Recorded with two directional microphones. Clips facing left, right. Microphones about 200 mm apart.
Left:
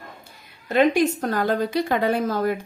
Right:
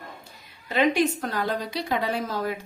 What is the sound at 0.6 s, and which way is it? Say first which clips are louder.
A woman's voice: left 4 dB; 50° left (ahead or behind).